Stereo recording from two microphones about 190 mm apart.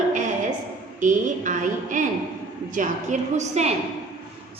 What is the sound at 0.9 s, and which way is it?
A woman's voice, 40° right (ahead or behind).